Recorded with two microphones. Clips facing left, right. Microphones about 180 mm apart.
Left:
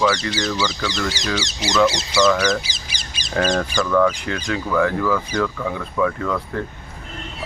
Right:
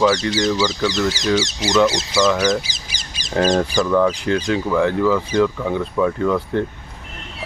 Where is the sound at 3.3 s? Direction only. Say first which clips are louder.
Right 3 dB; 30° right (ahead or behind).